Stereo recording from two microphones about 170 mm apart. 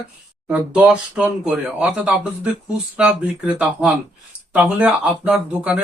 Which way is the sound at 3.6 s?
10° right (ahead or behind).